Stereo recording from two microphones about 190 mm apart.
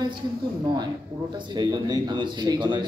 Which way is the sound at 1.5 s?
20° right (ahead or behind).